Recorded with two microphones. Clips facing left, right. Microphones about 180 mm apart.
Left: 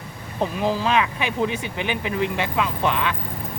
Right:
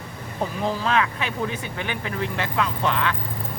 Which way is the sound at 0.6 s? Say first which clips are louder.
Left 2 dB; 20° left (ahead or behind).